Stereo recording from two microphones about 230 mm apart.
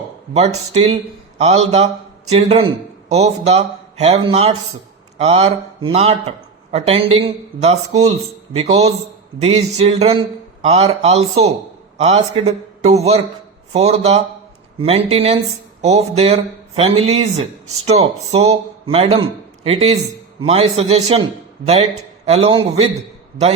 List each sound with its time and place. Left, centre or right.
0.3 s speech: right
22.3 s speech: right